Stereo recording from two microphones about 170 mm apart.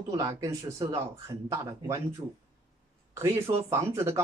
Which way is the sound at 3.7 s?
15° right (ahead or behind).